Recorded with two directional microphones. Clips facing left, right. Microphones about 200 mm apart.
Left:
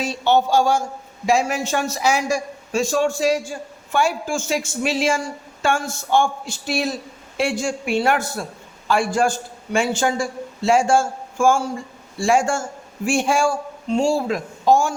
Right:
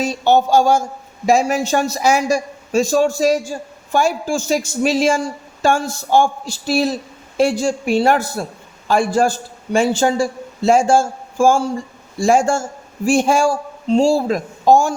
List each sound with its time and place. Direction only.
0.0 s a man's voice: 45° right (ahead or behind)